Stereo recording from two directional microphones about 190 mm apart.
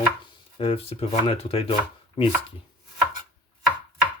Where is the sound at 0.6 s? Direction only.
30° left (ahead or behind).